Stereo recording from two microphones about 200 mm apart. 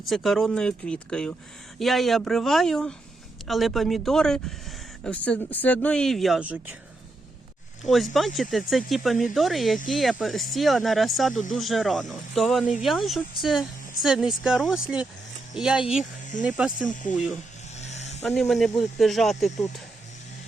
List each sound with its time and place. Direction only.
0.1 s speech: centre (ahead or behind)
7.9 s speech: centre (ahead or behind)
17.7 s vehicle: 35° left (ahead or behind)
18.2 s speech: 5° left (ahead or behind)